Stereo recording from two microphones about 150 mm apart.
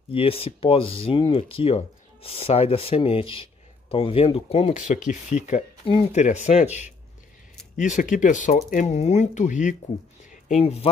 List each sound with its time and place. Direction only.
0.1 s speech: 40° left (ahead or behind); by 5.6 s 55° left (ahead or behind)
5.9 s speech: 35° left (ahead or behind)
6.2 s speech: 50° left (ahead or behind)
10.3 s speech: 45° left (ahead or behind)